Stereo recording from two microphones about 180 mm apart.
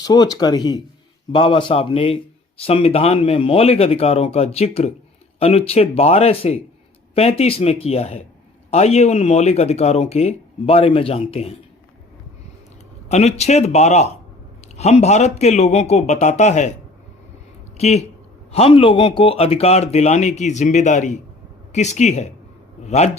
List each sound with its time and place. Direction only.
0.0 s speech: 20° left (ahead or behind)
13.1 s speech: 35° left (ahead or behind)
17.7 s a man's voice: 35° left (ahead or behind)